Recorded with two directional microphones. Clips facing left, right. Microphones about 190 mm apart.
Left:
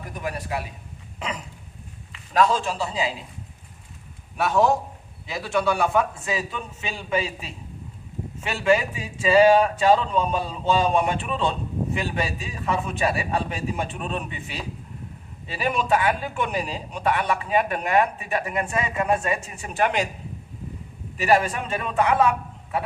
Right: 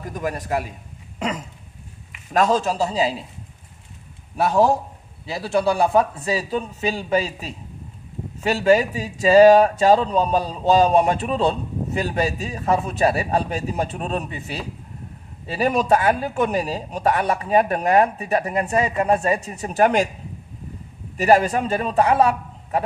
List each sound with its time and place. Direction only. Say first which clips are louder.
0.1 s a man's voice: right 5 dB; 45° right (ahead or behind)
2.3 s speech: right 2 dB; 45° right (ahead or behind)
4.4 s speech: right 3 dB; 35° right (ahead or behind)
21.2 s speech: right 4 dB; 40° right (ahead or behind)